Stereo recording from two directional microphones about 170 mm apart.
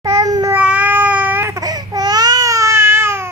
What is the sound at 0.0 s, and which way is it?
Babbling, 20° right (ahead or behind).